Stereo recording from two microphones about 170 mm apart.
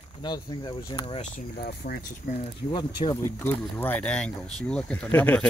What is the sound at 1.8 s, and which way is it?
Speech, 55° left (ahead or behind).